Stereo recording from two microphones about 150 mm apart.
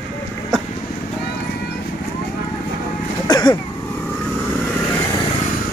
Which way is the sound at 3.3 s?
30° left (ahead or behind).